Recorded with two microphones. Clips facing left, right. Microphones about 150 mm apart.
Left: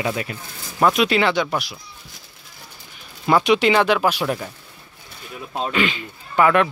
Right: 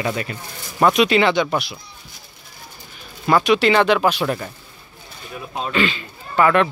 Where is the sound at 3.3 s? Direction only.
15° left (ahead or behind).